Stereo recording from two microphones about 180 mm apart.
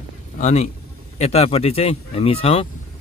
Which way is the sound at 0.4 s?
40° left (ahead or behind).